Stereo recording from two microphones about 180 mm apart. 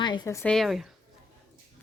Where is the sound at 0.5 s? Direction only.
Centre (ahead or behind).